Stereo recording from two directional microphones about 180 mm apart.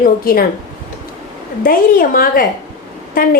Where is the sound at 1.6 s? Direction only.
55° left (ahead or behind).